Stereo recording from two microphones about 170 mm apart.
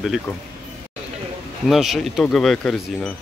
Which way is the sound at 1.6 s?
Centre (ahead or behind).